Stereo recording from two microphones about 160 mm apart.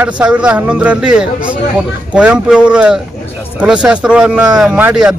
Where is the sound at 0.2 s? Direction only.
5° right (ahead or behind).